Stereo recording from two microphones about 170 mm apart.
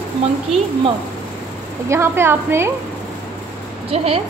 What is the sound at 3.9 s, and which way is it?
Speech, 35° right (ahead or behind).